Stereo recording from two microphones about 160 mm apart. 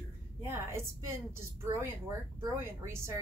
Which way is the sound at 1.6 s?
15° right (ahead or behind).